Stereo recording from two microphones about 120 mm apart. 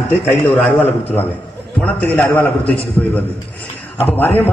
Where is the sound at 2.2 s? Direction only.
15° left (ahead or behind).